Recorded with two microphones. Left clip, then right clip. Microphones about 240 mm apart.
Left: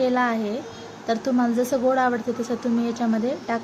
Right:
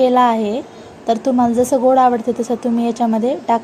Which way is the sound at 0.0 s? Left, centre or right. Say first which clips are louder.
Right 9 dB; centre.